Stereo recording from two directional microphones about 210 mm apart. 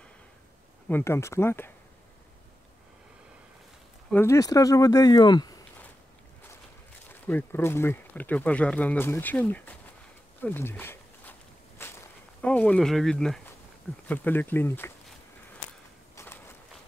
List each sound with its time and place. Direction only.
0.8 s speech: 10° left (ahead or behind)
4.1 s speech: 10° left (ahead or behind)
7.1 s speech: 10° left (ahead or behind)
10.4 s a sound: 10° left (ahead or behind)
14.0 s walk: 10° left (ahead or behind)
16.2 s a sound: 10° left (ahead or behind)